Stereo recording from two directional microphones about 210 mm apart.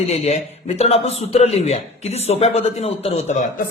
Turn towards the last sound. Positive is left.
turn(degrees=35)  # may be behind; listen again after turning